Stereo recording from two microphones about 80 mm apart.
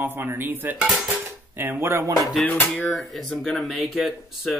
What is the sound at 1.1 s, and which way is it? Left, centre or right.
Dishes, right.